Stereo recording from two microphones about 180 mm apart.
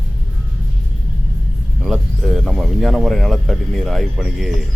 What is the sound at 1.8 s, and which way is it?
Speech, centre (ahead or behind).